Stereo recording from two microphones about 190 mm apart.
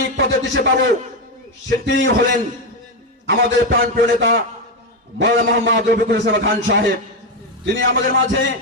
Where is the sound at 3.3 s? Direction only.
60° right (ahead or behind).